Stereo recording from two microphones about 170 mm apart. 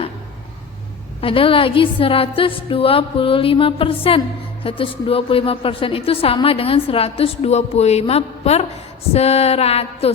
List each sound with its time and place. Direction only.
1.2 s a woman's voice: 30° left (ahead or behind)